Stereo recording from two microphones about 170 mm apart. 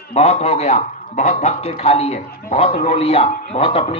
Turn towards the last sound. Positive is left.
turn(degrees=35)  # may be behind; listen again after turning